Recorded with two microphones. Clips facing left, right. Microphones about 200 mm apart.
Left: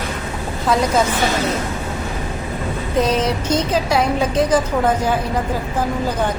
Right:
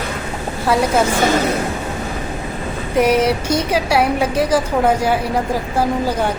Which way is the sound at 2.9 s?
10° right (ahead or behind).